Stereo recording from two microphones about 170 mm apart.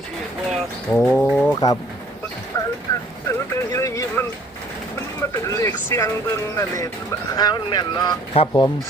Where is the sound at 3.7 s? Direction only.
20° left (ahead or behind).